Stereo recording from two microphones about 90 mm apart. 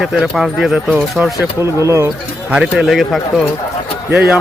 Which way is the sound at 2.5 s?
15° right (ahead or behind).